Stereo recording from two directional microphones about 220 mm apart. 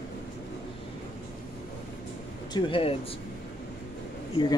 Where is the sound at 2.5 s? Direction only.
25° left (ahead or behind).